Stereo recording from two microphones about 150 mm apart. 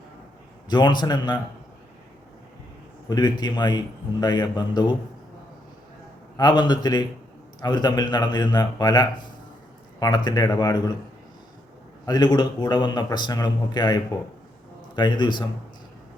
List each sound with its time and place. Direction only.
0.7 s speech: 30° left (ahead or behind)
3.1 s speech: 30° left (ahead or behind)
6.3 s speech: 30° left (ahead or behind)
12.0 s a man's voice: 25° left (ahead or behind)